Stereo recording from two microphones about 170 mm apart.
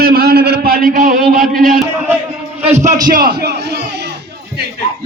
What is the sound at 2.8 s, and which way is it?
Speech, 50° right (ahead or behind).